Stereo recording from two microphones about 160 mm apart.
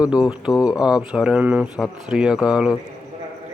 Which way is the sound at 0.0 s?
5° right (ahead or behind).